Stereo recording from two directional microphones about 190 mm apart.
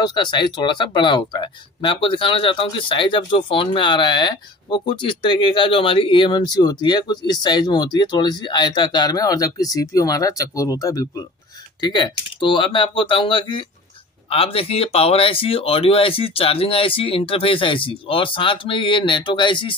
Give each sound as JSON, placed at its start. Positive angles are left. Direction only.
{"t": 0.0, "sound": "speech", "side_deg": 25}